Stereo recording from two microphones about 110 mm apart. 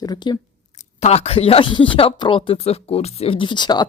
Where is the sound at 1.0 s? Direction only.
70° left (ahead or behind).